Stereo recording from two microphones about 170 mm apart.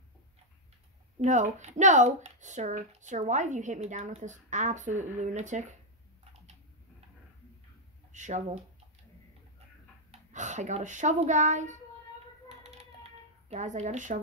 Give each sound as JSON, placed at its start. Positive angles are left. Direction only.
{"t": 1.2, "sound": "speech", "side_deg": -45}
{"t": 8.1, "sound": "speech", "side_deg": -45}
{"t": 10.3, "sound": "speech", "side_deg": -45}
{"t": 12.4, "sound": "typing", "side_deg": -35}